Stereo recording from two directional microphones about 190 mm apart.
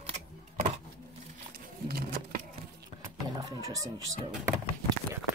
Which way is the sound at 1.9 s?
50° right (ahead or behind).